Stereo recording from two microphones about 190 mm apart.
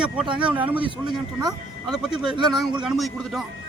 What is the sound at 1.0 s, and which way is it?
Speech, 20° right (ahead or behind).